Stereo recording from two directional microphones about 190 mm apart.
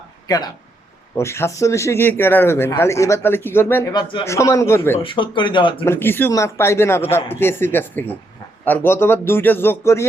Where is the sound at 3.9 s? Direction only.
25° left (ahead or behind).